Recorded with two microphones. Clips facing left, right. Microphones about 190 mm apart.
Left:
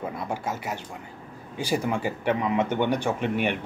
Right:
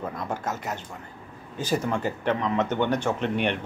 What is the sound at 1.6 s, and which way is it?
A man's voice, 10° left (ahead or behind).